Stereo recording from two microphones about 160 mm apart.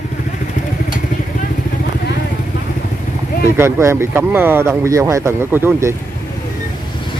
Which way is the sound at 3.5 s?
15° right (ahead or behind).